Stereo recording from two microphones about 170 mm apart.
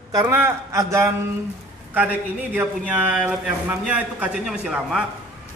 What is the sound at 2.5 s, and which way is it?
Speech, 10° right (ahead or behind).